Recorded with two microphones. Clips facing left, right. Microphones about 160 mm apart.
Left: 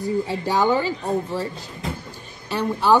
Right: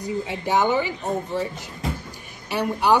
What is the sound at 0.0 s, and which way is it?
Speech, 20° right (ahead or behind).